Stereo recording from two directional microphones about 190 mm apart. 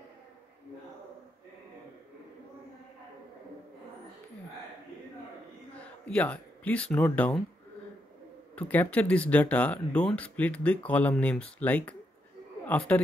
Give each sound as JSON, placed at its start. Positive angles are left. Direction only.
{"t": 5.8, "sound": "a sound", "side_deg": 5}
{"t": 7.1, "sound": "speech", "side_deg": 10}
{"t": 8.5, "sound": "speech", "side_deg": 10}